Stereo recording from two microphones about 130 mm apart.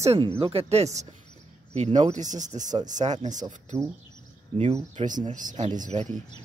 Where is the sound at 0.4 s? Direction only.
45° right (ahead or behind); by 3.3 s 65° right (ahead or behind).